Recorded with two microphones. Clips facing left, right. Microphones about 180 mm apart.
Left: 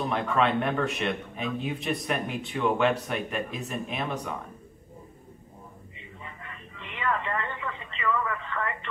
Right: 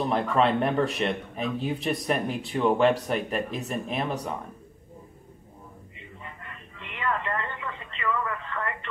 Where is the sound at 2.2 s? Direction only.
35° right (ahead or behind).